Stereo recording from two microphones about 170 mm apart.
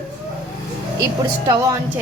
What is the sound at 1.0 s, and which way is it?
Speech, 20° right (ahead or behind).